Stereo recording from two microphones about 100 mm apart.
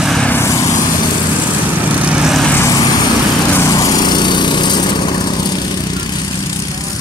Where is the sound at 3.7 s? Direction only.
40° left (ahead or behind).